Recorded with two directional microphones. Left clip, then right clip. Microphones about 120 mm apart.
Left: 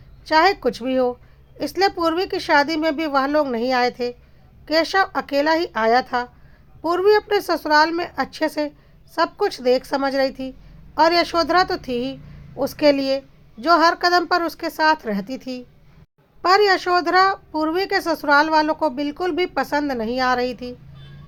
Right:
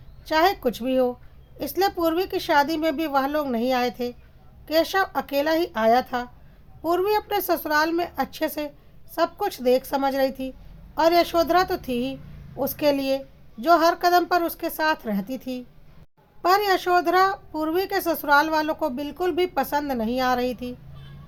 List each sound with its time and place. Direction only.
0.3 s a child's voice: 30° left (ahead or behind)